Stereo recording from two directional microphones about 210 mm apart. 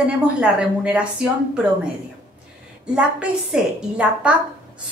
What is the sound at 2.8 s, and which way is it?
A woman's voice, 5° right (ahead or behind).